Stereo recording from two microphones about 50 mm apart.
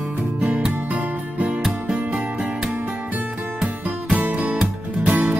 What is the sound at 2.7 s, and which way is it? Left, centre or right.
Music, right.